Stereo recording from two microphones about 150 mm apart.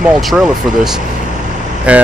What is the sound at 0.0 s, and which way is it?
Speech, 5° right (ahead or behind).